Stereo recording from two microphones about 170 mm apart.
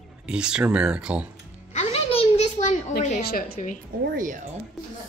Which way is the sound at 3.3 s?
55° left (ahead or behind).